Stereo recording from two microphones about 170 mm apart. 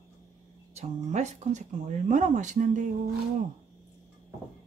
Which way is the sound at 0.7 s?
45° right (ahead or behind).